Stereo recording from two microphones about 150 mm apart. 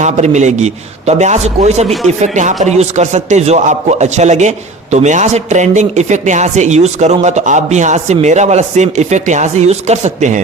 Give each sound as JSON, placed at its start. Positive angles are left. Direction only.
{"t": 0.0, "sound": "a man's voice", "side_deg": -50}